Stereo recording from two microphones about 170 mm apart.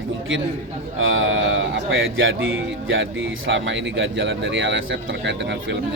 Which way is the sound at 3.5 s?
90° right.